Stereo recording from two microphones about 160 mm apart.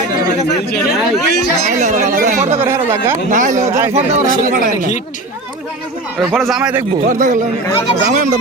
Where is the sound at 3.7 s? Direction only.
15° right (ahead or behind).